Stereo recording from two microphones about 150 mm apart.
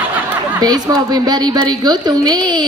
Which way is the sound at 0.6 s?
25° right (ahead or behind).